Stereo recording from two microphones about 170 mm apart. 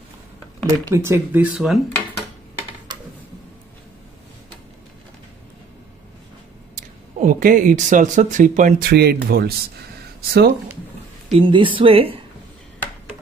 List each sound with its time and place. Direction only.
0.8 s speech: 15° right (ahead or behind)
6.7 s speech: 50° right (ahead or behind)
8.9 s speech: 65° right (ahead or behind)
10.3 s speech: 90° right
11.2 s a woman's voice: 30° right (ahead or behind)